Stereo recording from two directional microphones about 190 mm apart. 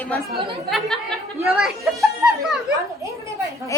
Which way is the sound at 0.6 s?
Centre (ahead or behind).